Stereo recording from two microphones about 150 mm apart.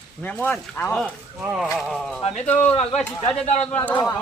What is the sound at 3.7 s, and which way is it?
Speech, 10° left (ahead or behind).